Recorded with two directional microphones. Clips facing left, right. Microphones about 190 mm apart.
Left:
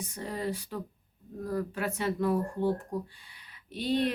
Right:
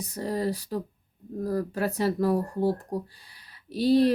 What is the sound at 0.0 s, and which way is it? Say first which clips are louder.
Speech: right 6 dB; 35° right (ahead or behind).